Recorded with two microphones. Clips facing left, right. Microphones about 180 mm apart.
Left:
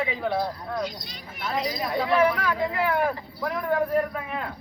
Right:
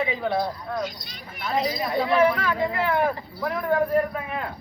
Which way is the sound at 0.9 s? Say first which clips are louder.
Left 2 dB; 50° right (ahead or behind).